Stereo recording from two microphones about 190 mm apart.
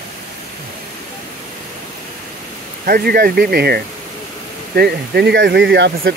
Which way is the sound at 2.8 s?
55° right (ahead or behind).